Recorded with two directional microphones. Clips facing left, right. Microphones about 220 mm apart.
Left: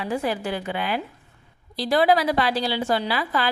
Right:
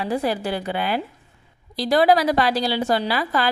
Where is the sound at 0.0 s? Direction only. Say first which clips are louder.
Right 2 dB; 35° right (ahead or behind).